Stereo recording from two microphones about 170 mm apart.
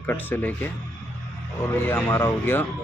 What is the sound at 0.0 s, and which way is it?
Speech, 10° left (ahead or behind).